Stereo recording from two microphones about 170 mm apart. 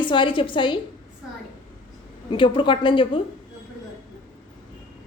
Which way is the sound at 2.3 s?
30° left (ahead or behind).